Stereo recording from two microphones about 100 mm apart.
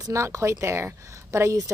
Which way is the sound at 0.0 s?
30° right (ahead or behind).